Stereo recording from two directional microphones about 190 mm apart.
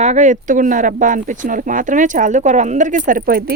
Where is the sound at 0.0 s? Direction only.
40° right (ahead or behind).